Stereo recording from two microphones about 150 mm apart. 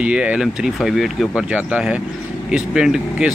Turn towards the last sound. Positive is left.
turn(degrees=-5)  # may be behind; listen again after turning